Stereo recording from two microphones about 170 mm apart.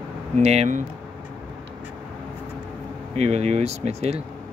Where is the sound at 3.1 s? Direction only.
40° right (ahead or behind).